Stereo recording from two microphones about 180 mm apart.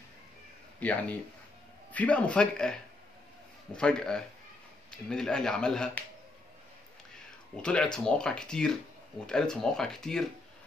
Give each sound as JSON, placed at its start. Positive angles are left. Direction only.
{"t": 0.7, "sound": "speech", "side_deg": 10}
{"t": 7.6, "sound": "speech", "side_deg": 5}